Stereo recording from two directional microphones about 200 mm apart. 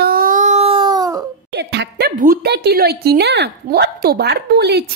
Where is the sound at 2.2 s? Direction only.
50° right (ahead or behind).